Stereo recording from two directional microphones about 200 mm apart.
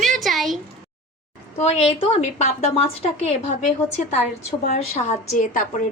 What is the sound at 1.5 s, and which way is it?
A woman's voice, 30° left (ahead or behind).